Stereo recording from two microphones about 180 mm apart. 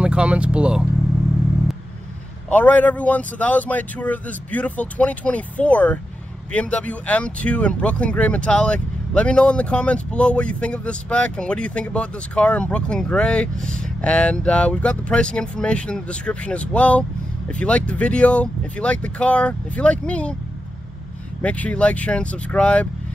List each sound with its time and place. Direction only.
0.0 s speech: 5° right (ahead or behind)
2.5 s speech: 10° left (ahead or behind)
21.4 s speech: 5° left (ahead or behind)